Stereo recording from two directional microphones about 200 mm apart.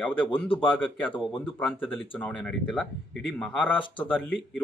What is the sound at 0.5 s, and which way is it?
Speech, 25° left (ahead or behind).